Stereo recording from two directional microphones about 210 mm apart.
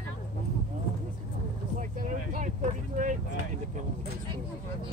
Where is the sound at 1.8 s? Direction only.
35° right (ahead or behind).